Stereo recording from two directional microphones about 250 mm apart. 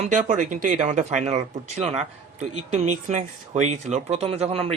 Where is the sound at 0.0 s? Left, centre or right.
Right.